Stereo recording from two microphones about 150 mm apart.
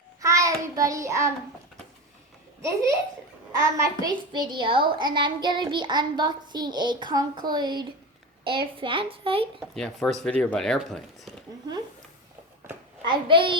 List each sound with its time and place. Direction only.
0.2 s child singing: 20° right (ahead or behind)
2.6 s a woman's voice: 20° right (ahead or behind); by 9.5 s 40° right (ahead or behind)
9.6 s speech: 5° left (ahead or behind)
13.1 s a child's voice: 35° right (ahead or behind)